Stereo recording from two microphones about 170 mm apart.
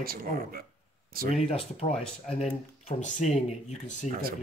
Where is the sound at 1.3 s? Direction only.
35° left (ahead or behind).